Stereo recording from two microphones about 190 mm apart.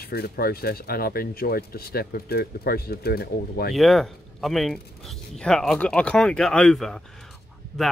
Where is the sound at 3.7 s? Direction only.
Centre (ahead or behind).